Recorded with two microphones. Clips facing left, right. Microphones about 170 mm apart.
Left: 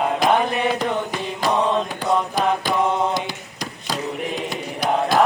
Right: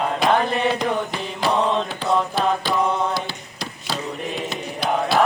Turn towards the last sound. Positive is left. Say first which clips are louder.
# left 1 dB
turn(degrees=15)  # may be behind; listen again after turning